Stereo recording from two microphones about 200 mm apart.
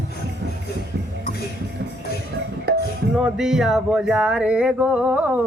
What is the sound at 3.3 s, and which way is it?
Speech, centre (ahead or behind).